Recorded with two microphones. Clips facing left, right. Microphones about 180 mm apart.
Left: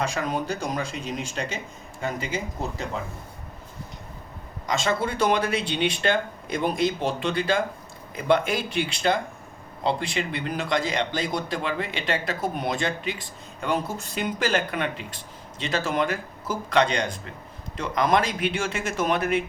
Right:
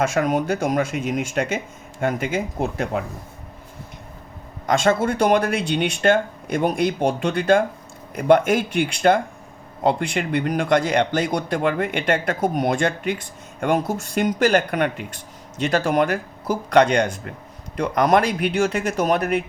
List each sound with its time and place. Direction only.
0.1 s speech: 55° right (ahead or behind)
4.6 s speech: 55° right (ahead or behind)